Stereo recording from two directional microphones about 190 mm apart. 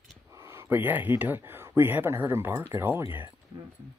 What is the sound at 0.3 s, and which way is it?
Speech, 15° right (ahead or behind).